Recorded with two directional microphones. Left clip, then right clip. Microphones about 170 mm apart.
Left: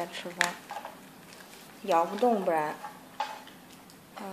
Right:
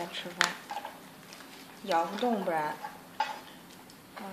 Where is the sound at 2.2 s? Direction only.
35° left (ahead or behind).